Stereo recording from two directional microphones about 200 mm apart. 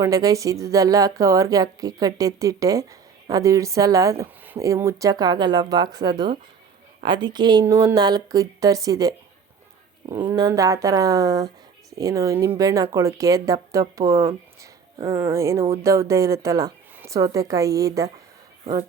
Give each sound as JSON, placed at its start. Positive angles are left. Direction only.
{"t": 0.0, "sound": "a woman's voice", "side_deg": -15}
{"t": 18.6, "sound": "speech", "side_deg": -30}